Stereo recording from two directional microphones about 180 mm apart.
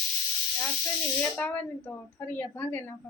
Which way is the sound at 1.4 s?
10° left (ahead or behind).